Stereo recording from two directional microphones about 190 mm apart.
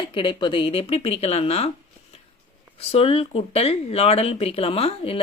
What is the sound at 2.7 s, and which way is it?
Speech, 30° left (ahead or behind).